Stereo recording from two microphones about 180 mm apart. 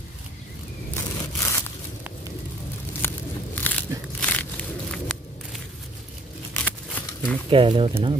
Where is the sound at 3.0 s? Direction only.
10° left (ahead or behind).